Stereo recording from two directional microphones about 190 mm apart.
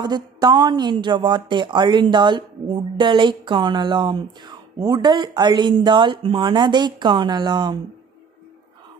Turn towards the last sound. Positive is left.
turn(degrees=-20)  # may be behind; listen again after turning